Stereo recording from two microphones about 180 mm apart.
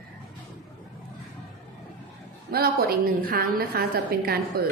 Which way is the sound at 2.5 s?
60° right (ahead or behind).